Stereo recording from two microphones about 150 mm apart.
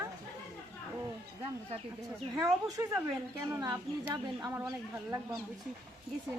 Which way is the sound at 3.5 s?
20° right (ahead or behind).